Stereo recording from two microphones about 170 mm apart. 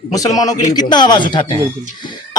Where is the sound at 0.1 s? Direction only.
20° left (ahead or behind).